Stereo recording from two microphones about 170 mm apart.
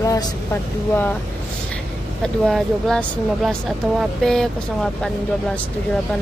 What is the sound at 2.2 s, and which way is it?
Music, centre (ahead or behind).